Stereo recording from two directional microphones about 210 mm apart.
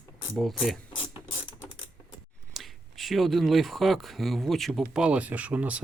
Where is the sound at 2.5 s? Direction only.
Centre (ahead or behind).